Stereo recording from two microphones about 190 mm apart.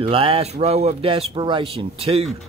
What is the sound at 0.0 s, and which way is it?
A man's voice, 30° right (ahead or behind).